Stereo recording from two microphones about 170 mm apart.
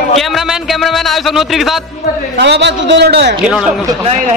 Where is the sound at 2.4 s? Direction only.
90° right.